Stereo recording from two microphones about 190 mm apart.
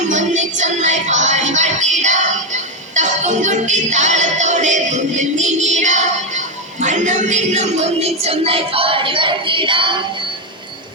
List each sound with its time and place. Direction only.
0.1 s music: 40° right (ahead or behind)